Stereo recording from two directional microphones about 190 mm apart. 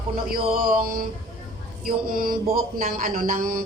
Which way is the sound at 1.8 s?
50° right (ahead or behind).